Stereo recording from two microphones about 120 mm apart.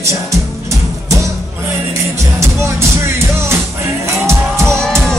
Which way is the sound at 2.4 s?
20° right (ahead or behind).